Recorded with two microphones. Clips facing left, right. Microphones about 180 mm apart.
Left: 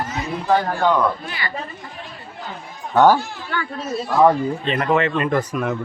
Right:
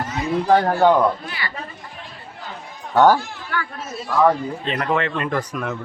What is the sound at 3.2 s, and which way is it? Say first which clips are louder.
A child's voice: left 1 dB; 30° left (ahead or behind).